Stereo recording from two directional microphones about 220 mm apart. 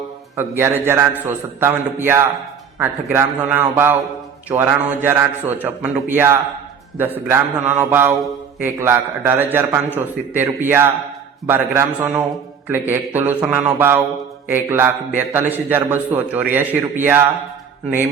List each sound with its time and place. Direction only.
0.3 s a man's voice: 10° right (ahead or behind)